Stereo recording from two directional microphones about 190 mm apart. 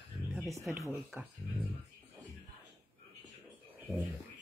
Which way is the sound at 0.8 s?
Centre (ahead or behind).